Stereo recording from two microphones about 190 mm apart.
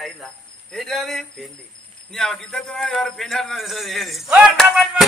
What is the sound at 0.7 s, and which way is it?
A man's voice, centre (ahead or behind).